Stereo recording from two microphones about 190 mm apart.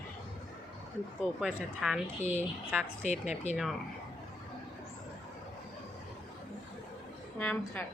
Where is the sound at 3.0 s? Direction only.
35° left (ahead or behind).